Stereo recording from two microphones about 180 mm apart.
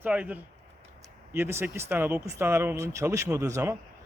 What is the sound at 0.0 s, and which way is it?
A man's voice, 10° right (ahead or behind).